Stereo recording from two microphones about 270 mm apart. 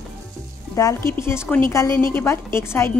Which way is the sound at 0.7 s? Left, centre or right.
Centre.